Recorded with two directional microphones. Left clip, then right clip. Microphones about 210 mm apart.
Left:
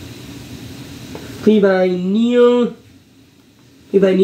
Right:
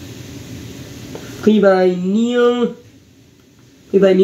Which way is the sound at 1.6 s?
10° right (ahead or behind).